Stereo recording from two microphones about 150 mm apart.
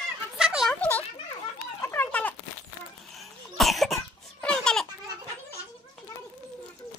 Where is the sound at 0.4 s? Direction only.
5° right (ahead or behind).